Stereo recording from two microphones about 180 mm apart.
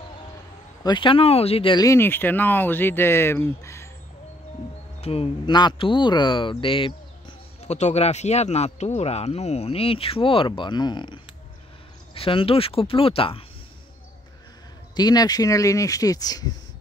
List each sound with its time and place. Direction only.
0.8 s speech: 25° left (ahead or behind)
5.0 s speech: 35° left (ahead or behind)
15.0 s speech: 20° left (ahead or behind)